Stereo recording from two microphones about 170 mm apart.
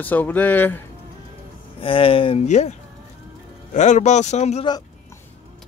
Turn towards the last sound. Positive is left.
turn(degrees=40)  # may be behind; listen again after turning